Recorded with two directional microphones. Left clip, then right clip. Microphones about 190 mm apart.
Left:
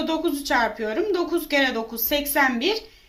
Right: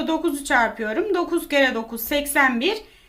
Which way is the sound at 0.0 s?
15° right (ahead or behind).